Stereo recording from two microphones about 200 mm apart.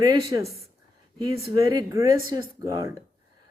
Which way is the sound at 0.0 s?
20° right (ahead or behind).